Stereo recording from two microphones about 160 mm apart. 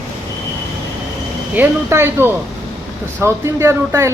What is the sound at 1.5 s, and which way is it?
Speech, 15° right (ahead or behind).